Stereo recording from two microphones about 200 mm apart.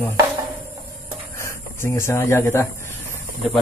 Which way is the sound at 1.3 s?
15° left (ahead or behind).